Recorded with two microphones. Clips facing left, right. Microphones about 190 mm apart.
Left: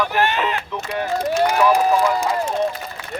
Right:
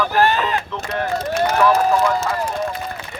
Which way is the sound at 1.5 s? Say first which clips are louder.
Right 2 dB; 10° left (ahead or behind).